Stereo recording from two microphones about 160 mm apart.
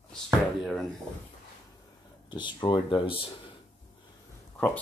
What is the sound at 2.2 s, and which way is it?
Speech, 30° left (ahead or behind).